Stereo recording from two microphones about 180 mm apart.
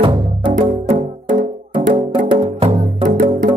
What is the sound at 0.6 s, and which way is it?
Music, 45° right (ahead or behind).